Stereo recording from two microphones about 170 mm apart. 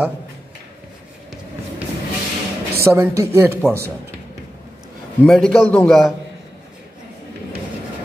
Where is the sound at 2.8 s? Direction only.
15° right (ahead or behind).